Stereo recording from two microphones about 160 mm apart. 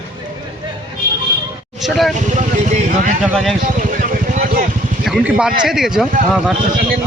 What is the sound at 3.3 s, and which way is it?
Speech, centre (ahead or behind).